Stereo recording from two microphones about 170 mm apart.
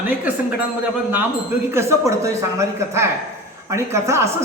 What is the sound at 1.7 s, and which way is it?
A man's voice, 15° right (ahead or behind).